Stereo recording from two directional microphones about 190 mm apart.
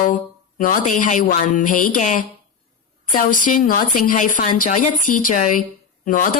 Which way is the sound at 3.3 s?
45° left (ahead or behind).